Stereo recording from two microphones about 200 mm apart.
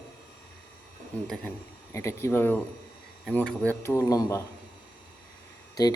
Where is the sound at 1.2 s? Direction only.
Centre (ahead or behind).